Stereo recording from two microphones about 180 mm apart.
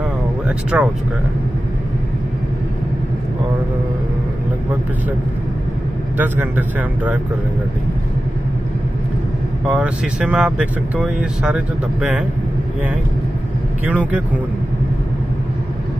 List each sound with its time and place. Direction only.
0.5 s speech: 5° right (ahead or behind)
6.1 s speech: 10° right (ahead or behind)
9.7 s speech: 5° right (ahead or behind)
13.8 s speech: 10° right (ahead or behind)